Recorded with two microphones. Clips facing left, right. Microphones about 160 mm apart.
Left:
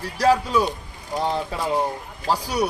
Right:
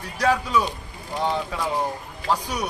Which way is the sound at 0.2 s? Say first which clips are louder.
Left 3 dB; 35° left (ahead or behind).